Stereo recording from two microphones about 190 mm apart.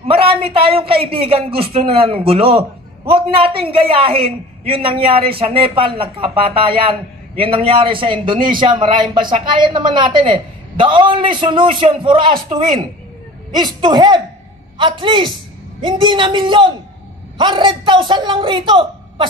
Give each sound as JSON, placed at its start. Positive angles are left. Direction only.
{"t": 0.1, "sound": "a woman's voice", "side_deg": -30}